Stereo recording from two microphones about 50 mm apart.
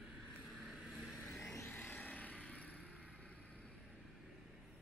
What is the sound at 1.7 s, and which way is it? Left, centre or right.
Vehicle, left.